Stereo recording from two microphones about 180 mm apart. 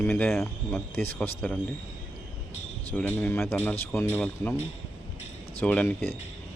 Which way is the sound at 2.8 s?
10° left (ahead or behind).